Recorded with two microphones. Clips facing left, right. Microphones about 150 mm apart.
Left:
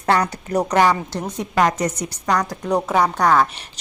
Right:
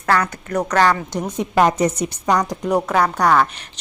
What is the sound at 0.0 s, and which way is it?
Speech, 20° left (ahead or behind).